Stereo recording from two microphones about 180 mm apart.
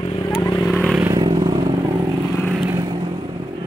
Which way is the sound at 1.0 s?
25° right (ahead or behind).